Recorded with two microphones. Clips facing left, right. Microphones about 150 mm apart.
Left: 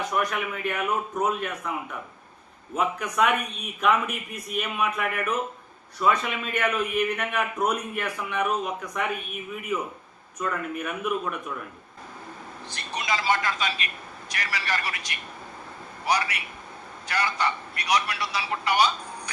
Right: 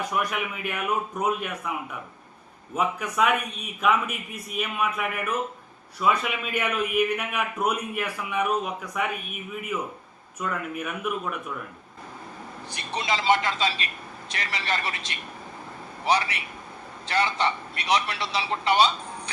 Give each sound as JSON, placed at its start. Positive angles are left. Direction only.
{"t": 0.1, "sound": "a man's voice", "side_deg": -10}
{"t": 2.7, "sound": "a man's voice", "side_deg": -5}
{"t": 10.4, "sound": "speech", "side_deg": -5}
{"t": 12.9, "sound": "a man's voice", "side_deg": -25}